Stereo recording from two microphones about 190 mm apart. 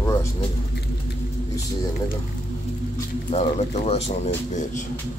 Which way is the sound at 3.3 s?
35° left (ahead or behind).